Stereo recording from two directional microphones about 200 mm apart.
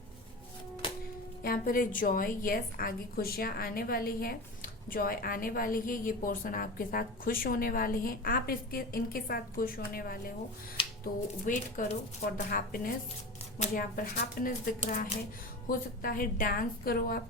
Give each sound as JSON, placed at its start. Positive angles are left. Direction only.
{"t": 0.8, "sound": "music", "side_deg": 25}
{"t": 1.4, "sound": "a woman's voice", "side_deg": 45}